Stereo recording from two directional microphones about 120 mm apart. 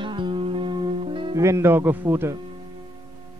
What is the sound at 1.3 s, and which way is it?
A man's voice, 25° right (ahead or behind).